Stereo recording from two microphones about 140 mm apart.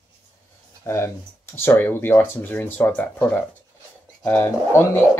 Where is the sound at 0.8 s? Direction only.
20° left (ahead or behind).